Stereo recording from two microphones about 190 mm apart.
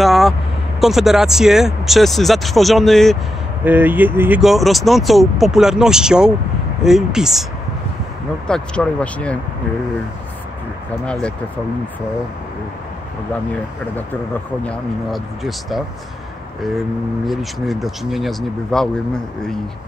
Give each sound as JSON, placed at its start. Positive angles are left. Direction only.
{"t": 0.0, "sound": "vehicle", "side_deg": 0}
{"t": 0.7, "sound": "speech", "side_deg": 0}
{"t": 3.6, "sound": "speech", "side_deg": -10}
{"t": 8.5, "sound": "speech", "side_deg": 5}
{"t": 11.1, "sound": "speech", "side_deg": 5}
{"t": 14.6, "sound": "speech", "side_deg": 5}
{"t": 17.3, "sound": "speech", "side_deg": 0}